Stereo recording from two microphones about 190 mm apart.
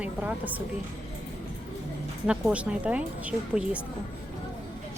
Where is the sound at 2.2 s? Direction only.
5° right (ahead or behind).